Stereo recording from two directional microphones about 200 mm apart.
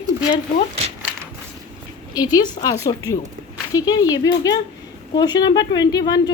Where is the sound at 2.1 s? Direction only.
20° left (ahead or behind).